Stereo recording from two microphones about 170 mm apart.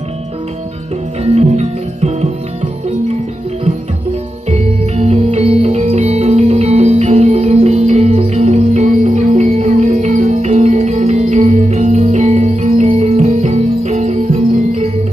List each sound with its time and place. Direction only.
1.2 s music: 40° right (ahead or behind)
4.5 s music: 40° right (ahead or behind)